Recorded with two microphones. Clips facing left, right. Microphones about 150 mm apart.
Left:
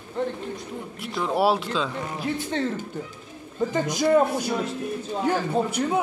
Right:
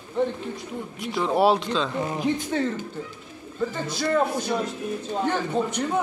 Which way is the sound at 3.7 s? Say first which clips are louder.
Left 5 dB; 15° left (ahead or behind).